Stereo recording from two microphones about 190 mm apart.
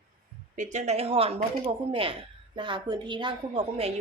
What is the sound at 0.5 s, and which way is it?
A woman's voice, 40° right (ahead or behind).